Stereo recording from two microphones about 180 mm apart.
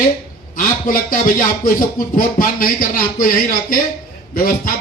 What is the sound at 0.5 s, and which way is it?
Speech, 50° left (ahead or behind).